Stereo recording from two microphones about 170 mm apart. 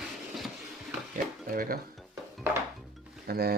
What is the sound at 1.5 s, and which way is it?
Speech, 55° right (ahead or behind).